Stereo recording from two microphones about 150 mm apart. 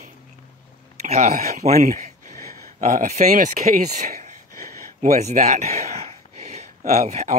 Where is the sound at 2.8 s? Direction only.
50° right (ahead or behind).